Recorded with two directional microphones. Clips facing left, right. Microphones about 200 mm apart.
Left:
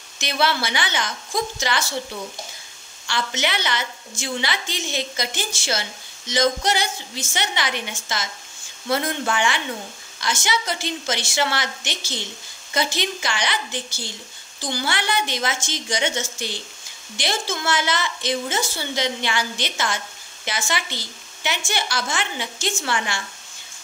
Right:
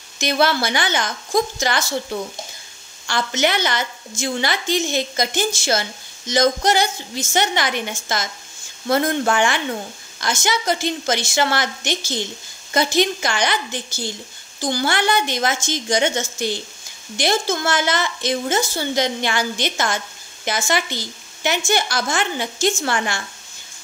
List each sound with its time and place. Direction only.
0.2 s a woman's voice: 45° right (ahead or behind)
3.1 s a woman's voice: 45° right (ahead or behind)